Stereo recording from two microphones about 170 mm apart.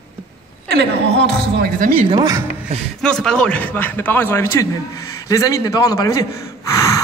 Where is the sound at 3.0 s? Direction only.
5° left (ahead or behind); by 6.2 s 20° left (ahead or behind).